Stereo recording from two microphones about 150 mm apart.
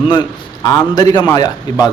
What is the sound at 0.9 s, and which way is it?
A man's voice, 25° left (ahead or behind).